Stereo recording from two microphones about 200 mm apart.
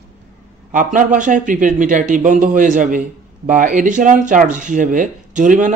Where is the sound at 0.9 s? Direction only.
40° right (ahead or behind).